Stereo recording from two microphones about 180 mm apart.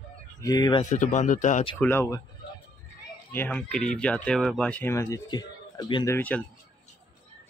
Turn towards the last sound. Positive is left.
turn(degrees=10)  # may be behind; listen again after turning